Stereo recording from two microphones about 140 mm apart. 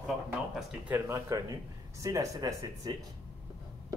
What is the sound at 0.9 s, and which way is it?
Speech, 20° right (ahead or behind).